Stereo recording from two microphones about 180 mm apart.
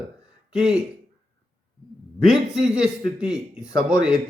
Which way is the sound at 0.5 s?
5° right (ahead or behind).